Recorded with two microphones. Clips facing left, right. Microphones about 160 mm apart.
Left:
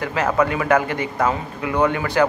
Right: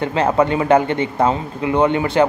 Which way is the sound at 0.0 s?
25° right (ahead or behind).